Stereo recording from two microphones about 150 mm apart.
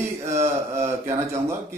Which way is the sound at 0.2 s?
20° right (ahead or behind).